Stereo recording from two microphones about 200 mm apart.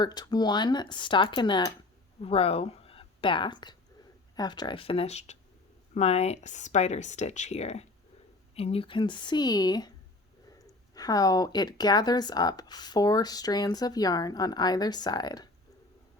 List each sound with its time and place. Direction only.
0.0 s a woman's voice: 20° left (ahead or behind)